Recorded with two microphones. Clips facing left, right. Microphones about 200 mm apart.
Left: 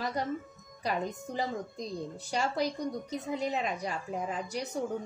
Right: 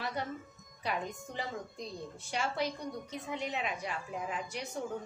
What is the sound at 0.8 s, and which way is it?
A woman's voice, 40° left (ahead or behind).